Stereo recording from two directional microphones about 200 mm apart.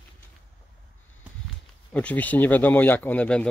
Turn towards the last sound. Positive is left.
turn(degrees=5)  # may be behind; listen again after turning